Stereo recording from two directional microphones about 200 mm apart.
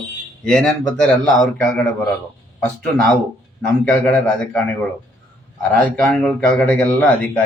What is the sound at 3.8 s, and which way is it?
Speech, 5° left (ahead or behind).